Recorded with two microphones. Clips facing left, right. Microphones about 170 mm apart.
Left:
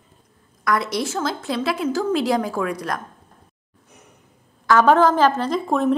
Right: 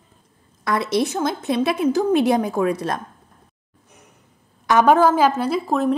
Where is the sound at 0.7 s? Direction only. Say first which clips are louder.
Right 2 dB; 25° right (ahead or behind).